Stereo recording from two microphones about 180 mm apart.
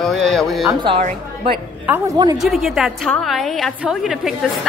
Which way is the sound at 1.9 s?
20° right (ahead or behind).